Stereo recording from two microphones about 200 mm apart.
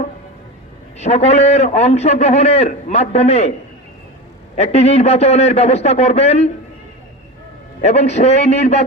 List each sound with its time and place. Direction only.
0.9 s a man's voice: 35° left (ahead or behind)
4.5 s a man's voice: 35° left (ahead or behind)
7.8 s a man's voice: 35° left (ahead or behind)